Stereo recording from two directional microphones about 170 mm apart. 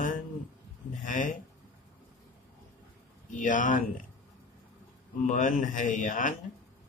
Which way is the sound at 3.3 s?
50° left (ahead or behind).